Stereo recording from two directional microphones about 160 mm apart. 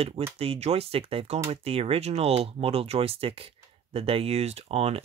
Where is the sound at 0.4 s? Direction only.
40° right (ahead or behind).